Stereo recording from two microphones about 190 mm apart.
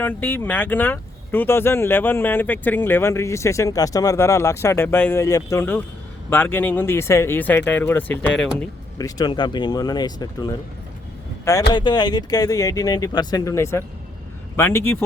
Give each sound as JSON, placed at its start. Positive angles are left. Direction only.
{"t": 0.0, "sound": "speech", "side_deg": 10}
{"t": 11.7, "sound": "speech", "side_deg": 25}